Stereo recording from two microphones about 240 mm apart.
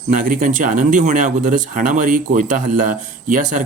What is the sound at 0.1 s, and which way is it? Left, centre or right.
Speech, right.